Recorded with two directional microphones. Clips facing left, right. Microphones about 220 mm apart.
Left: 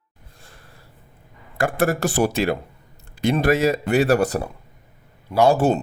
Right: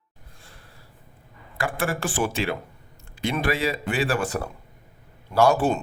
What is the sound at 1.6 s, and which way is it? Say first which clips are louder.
Speech: left 6 dB; 40° left (ahead or behind).